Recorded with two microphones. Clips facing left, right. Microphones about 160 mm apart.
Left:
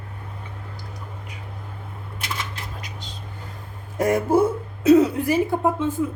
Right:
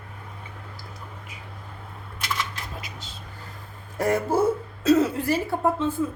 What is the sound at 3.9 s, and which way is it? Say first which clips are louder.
A woman's voice: left 4 dB; 20° left (ahead or behind).